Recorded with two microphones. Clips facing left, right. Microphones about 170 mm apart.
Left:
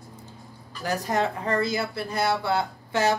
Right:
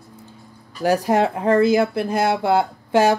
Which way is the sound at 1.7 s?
90° right.